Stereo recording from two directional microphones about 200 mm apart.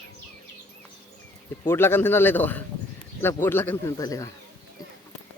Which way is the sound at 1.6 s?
10° left (ahead or behind).